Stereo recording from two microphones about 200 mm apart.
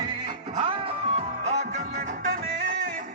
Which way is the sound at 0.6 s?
30° right (ahead or behind).